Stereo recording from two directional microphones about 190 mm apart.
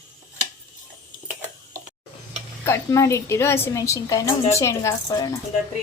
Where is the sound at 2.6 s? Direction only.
15° left (ahead or behind).